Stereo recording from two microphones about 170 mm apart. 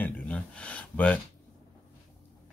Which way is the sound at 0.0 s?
5° left (ahead or behind).